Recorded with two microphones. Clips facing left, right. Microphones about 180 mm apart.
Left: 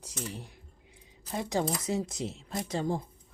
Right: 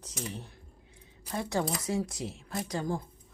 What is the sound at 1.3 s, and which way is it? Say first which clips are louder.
A woman's voice: left 1 dB; 15° left (ahead or behind).